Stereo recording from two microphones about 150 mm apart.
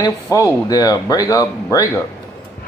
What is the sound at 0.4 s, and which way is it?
Speech, 25° left (ahead or behind).